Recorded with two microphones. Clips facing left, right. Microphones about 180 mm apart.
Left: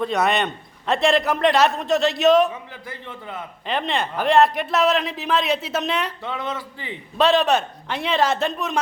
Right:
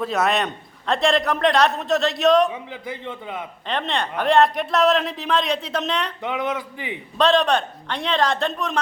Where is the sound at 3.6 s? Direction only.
5° left (ahead or behind).